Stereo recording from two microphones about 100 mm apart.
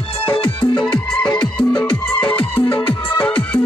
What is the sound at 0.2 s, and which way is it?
Music, 60° left (ahead or behind).